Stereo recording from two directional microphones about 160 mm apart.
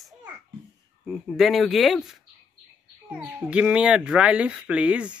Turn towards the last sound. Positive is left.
turn(degrees=-5)  # may be behind; listen again after turning